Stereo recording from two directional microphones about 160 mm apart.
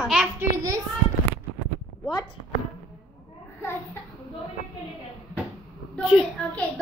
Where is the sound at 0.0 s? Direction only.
5° right (ahead or behind).